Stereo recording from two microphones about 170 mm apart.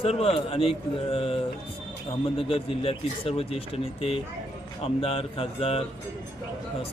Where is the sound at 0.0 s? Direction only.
35° left (ahead or behind).